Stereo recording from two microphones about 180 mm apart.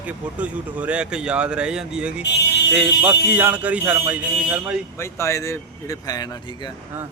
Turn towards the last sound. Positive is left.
turn(degrees=20)  # may be behind; listen again after turning